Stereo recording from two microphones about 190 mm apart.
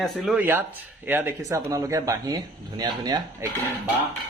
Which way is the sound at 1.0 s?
10° right (ahead or behind).